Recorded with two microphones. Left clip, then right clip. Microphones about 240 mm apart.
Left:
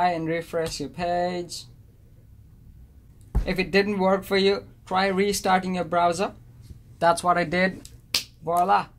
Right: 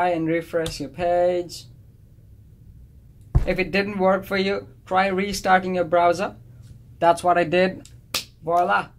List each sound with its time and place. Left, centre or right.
0.0 s speech: left
3.3 s speech: left; by 8.2 s centre
8.5 s speech: left